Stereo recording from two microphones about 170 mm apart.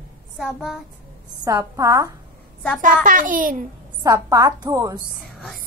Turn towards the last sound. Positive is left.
turn(degrees=-20)  # may be behind; listen again after turning